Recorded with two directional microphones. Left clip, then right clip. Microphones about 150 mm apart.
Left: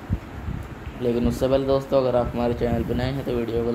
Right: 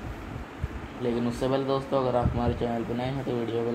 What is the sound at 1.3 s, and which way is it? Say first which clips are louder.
Speech: left 7 dB; 40° left (ahead or behind).